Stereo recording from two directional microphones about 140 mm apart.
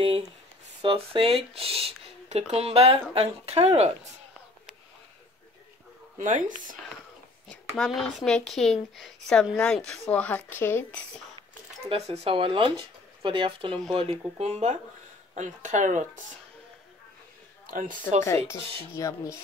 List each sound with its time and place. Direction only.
0.0 s speech: 35° right (ahead or behind)
6.1 s speech: 65° right (ahead or behind)
7.4 s speech: 5° left (ahead or behind)
11.9 s speech: 45° right (ahead or behind)
13.9 s speech: 50° right (ahead or behind)
17.6 s speech: 75° right (ahead or behind)
18.2 s speech: 20° left (ahead or behind)